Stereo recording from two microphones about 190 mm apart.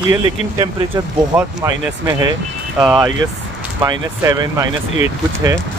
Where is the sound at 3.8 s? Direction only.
15° right (ahead or behind).